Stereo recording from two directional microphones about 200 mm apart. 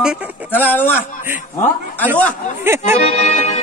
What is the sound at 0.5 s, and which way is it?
Speech, 10° left (ahead or behind).